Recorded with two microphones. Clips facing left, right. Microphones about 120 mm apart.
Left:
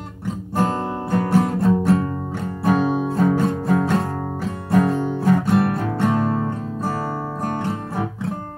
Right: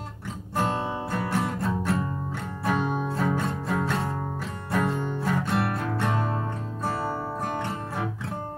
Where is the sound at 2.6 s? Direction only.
10° left (ahead or behind).